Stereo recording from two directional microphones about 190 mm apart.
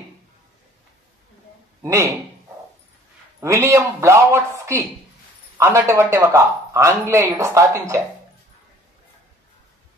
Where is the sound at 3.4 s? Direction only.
15° right (ahead or behind).